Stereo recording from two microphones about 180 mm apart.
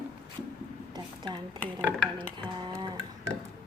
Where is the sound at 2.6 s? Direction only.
25° right (ahead or behind).